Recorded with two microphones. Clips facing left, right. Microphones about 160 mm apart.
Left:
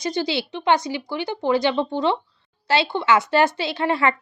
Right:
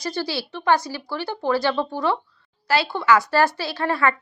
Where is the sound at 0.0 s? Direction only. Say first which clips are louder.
Left 3 dB; 20° left (ahead or behind).